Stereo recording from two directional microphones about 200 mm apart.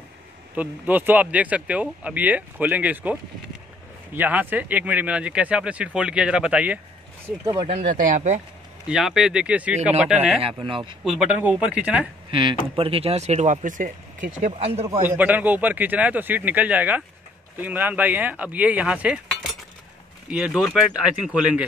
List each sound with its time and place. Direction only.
0.6 s speech: 10° right (ahead or behind)
7.6 s speech: 35° right (ahead or behind)
8.8 s speech: 5° right (ahead or behind)
10.4 s speech: 25° right (ahead or behind)
11.1 s speech: 5° right (ahead or behind)
12.3 s speech: 25° right (ahead or behind); by 13.9 s 40° right (ahead or behind)
14.4 s speech: 30° right (ahead or behind)
14.9 s speech: 10° right (ahead or behind)